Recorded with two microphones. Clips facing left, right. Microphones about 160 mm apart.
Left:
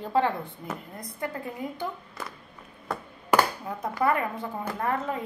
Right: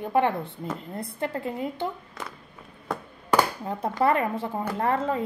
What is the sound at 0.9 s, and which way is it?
Speech, 30° right (ahead or behind).